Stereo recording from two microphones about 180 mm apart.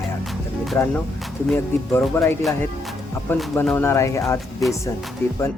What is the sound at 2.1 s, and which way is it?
Speech, 15° left (ahead or behind).